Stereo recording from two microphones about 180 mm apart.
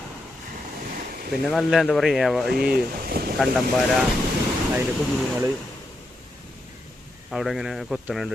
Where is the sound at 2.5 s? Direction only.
55° right (ahead or behind).